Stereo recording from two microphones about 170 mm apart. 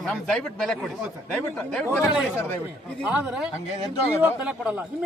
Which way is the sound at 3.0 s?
5° right (ahead or behind).